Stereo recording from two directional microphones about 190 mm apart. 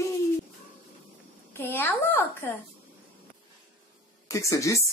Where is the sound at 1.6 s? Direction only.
10° left (ahead or behind).